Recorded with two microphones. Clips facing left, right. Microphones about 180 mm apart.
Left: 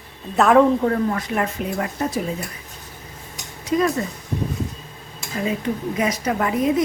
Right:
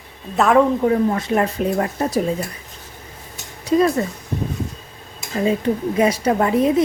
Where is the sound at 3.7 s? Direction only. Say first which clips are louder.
Right 4 dB; 30° right (ahead or behind).